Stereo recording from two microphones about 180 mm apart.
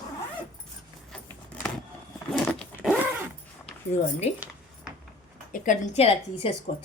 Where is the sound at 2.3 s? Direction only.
5° left (ahead or behind).